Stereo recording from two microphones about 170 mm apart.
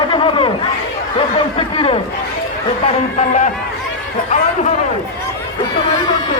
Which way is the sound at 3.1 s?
45° left (ahead or behind).